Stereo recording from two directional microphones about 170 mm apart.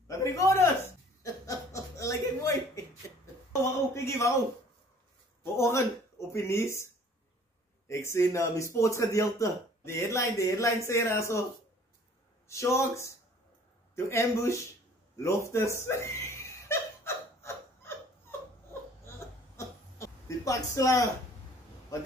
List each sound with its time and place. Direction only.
0.1 s a man's voice: 20° left (ahead or behind)
1.2 s chuckle: 20° left (ahead or behind)
3.6 s a sound: 15° left (ahead or behind)
5.4 s speech: 15° left (ahead or behind)
7.9 s a man's voice: 15° left (ahead or behind)
12.4 s a man's voice: 15° left (ahead or behind)
15.1 s chuckle: 15° left (ahead or behind)
18.7 s crying: 15° left (ahead or behind)